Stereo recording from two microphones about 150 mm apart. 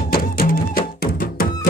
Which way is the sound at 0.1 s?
80° left.